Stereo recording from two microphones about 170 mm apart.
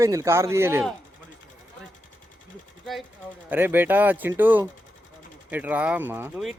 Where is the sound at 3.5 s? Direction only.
10° right (ahead or behind).